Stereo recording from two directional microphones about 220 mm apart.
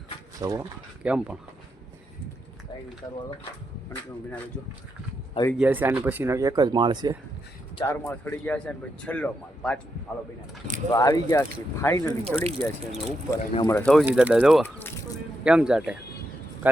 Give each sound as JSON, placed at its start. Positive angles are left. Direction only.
{"t": 0.3, "sound": "speech", "side_deg": -15}
{"t": 1.0, "sound": "speech", "side_deg": -5}
{"t": 5.5, "sound": "speech", "side_deg": -10}
{"t": 7.8, "sound": "speech", "side_deg": 10}
{"t": 10.9, "sound": "speech", "side_deg": 15}
{"t": 12.4, "sound": "speech", "side_deg": -30}
{"t": 13.3, "sound": "speech", "side_deg": 15}
{"t": 14.0, "sound": "speech", "side_deg": -5}
{"t": 14.6, "sound": "speech", "side_deg": 10}
{"t": 15.4, "sound": "speech", "side_deg": -5}